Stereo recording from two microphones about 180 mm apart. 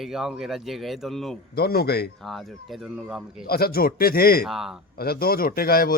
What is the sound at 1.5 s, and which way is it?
Speech, 60° left (ahead or behind).